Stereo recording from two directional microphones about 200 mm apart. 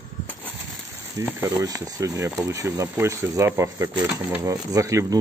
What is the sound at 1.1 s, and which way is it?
Speech, 15° right (ahead or behind).